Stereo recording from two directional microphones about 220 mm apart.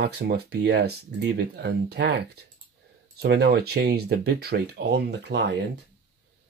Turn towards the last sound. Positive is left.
turn(degrees=-50)  # may be behind; listen again after turning